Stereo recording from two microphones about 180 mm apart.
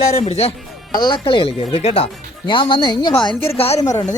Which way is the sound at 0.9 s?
25° left (ahead or behind).